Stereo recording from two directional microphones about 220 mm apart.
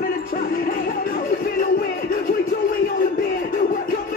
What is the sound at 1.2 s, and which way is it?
Music, 40° left (ahead or behind).